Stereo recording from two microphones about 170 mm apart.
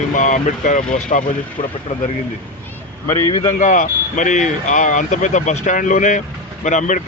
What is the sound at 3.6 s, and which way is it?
Speech, 50° left (ahead or behind).